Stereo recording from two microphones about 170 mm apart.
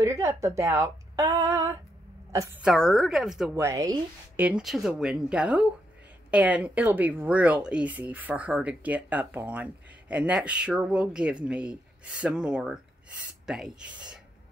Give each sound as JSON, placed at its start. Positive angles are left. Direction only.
{"t": 0.0, "sound": "speech", "side_deg": -15}
{"t": 2.6, "sound": "speech", "side_deg": 0}
{"t": 3.5, "sound": "speech", "side_deg": -15}
{"t": 4.5, "sound": "speech", "side_deg": -5}